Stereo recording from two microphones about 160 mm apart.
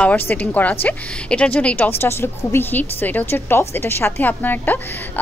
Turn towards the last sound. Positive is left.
turn(degrees=10)  # may be behind; listen again after turning